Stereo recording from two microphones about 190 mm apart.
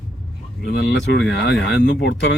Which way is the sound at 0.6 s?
65° left (ahead or behind).